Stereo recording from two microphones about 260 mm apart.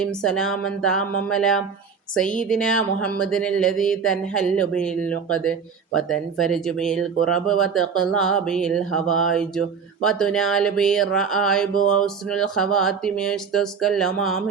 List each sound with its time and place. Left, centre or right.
0.2 s speech: centre